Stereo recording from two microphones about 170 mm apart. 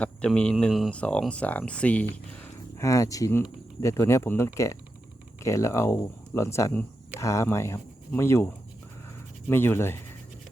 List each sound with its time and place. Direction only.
0.0 s speech: 5° left (ahead or behind)
9.5 s speech: 15° left (ahead or behind)